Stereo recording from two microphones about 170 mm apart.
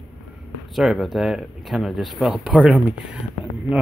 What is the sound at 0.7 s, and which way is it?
Speech, centre (ahead or behind).